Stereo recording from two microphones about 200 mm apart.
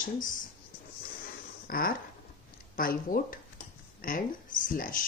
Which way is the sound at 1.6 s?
45° left (ahead or behind).